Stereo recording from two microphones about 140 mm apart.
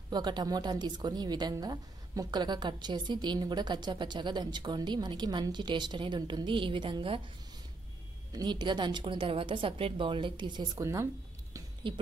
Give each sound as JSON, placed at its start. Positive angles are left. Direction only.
{"t": 0.1, "sound": "a woman's voice", "side_deg": -30}
{"t": 8.3, "sound": "a woman's voice", "side_deg": -30}
{"t": 11.9, "sound": "a woman's voice", "side_deg": -35}